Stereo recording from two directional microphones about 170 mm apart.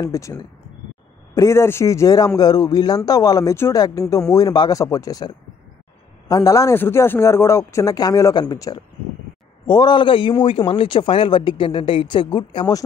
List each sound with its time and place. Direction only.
0.0 s a man's voice: 20° left (ahead or behind)